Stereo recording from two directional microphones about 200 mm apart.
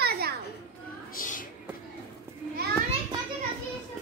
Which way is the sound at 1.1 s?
40° left (ahead or behind).